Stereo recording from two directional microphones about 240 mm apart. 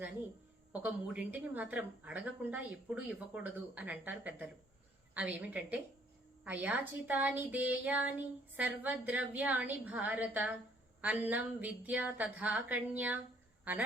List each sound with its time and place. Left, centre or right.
0.7 s a woman's voice: centre